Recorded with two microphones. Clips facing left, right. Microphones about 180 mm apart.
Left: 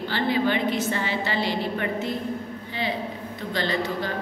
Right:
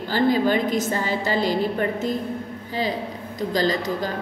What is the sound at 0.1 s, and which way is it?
A woman's voice, 40° right (ahead or behind).